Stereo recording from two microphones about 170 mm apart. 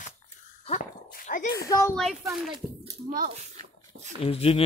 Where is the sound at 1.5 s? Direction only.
20° left (ahead or behind).